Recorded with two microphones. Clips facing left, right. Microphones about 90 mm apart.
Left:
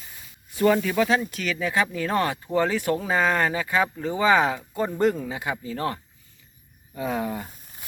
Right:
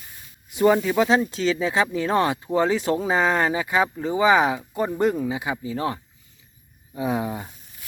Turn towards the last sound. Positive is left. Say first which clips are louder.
# right 2 dB
turn(degrees=-15)  # may be behind; listen again after turning